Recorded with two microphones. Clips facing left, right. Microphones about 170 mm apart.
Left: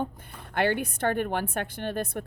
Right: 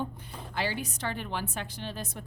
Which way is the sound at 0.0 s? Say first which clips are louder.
Left 3 dB; 60° left (ahead or behind).